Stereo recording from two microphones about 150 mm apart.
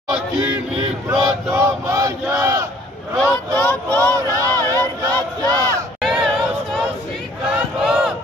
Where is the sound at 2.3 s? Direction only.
20° right (ahead or behind).